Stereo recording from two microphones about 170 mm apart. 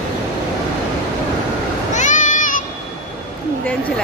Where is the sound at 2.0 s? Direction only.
45° left (ahead or behind).